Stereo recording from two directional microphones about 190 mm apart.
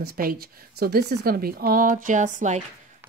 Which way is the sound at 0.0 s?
50° right (ahead or behind).